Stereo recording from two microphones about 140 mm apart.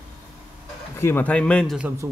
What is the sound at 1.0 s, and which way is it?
Speech, 15° left (ahead or behind).